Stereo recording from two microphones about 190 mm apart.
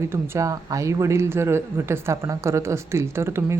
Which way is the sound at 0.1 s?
15° right (ahead or behind).